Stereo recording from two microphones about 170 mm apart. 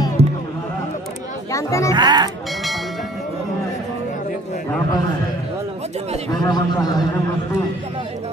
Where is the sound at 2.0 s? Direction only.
25° right (ahead or behind).